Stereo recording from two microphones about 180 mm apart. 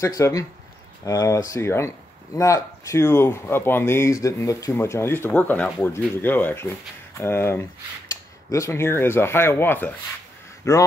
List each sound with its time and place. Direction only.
0.0 s speech: 15° left (ahead or behind)